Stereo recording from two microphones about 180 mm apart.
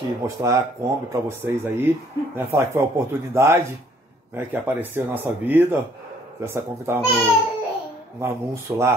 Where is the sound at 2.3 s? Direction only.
15° right (ahead or behind).